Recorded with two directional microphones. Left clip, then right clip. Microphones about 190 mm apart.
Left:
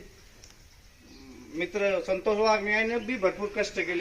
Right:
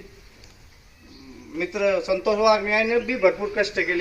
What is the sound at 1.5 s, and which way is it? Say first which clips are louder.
A man's voice: right 5 dB; 35° left (ahead or behind).